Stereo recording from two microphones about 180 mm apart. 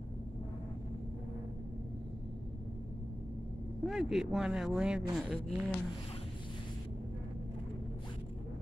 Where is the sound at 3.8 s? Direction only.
Centre (ahead or behind).